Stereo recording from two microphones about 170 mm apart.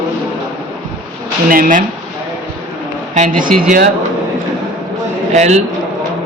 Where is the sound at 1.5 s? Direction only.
55° right (ahead or behind).